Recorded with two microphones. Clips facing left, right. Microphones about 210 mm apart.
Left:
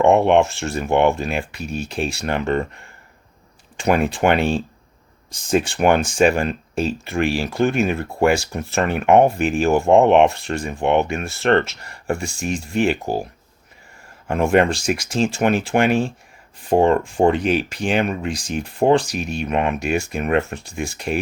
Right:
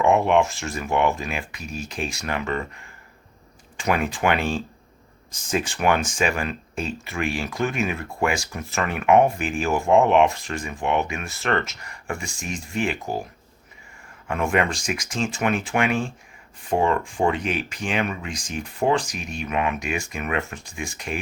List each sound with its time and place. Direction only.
0.2 s speech: 30° left (ahead or behind)
3.8 s speech: 30° left (ahead or behind)
5.6 s speech: 30° left (ahead or behind)
12.2 s speech: 65° left (ahead or behind)
12.9 s speech: 30° left (ahead or behind)
14.3 s speech: 30° left (ahead or behind)